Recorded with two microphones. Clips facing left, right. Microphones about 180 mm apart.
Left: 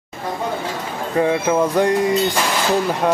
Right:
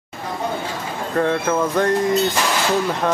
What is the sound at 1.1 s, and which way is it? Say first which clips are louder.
Speech: left 2 dB; 10° left (ahead or behind).